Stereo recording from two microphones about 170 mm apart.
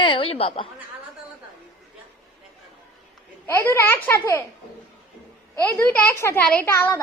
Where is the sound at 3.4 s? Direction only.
10° left (ahead or behind).